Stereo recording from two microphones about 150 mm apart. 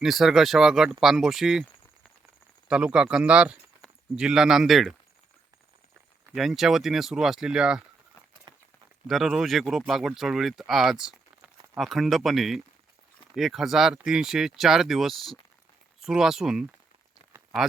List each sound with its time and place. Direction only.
0.0 s speech: centre (ahead or behind)
2.6 s speech: 5° right (ahead or behind)
6.3 s speech: centre (ahead or behind)
8.5 s a sound: 30° right (ahead or behind)
9.0 s speech: centre (ahead or behind)